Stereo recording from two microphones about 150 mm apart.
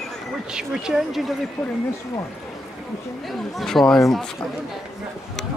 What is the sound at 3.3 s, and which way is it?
Speech, centre (ahead or behind).